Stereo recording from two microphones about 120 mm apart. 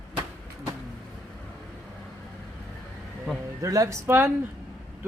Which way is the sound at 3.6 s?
25° right (ahead or behind).